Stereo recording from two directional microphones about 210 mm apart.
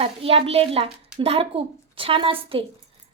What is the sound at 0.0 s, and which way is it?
A woman's voice, 25° right (ahead or behind).